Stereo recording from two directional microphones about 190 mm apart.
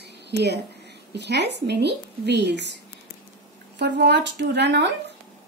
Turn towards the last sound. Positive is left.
turn(degrees=-65)  # may be behind; listen again after turning